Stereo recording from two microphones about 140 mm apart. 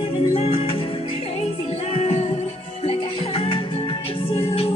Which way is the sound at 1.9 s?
50° left (ahead or behind).